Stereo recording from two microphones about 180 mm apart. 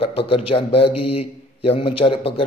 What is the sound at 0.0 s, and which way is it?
A man's voice, 30° left (ahead or behind).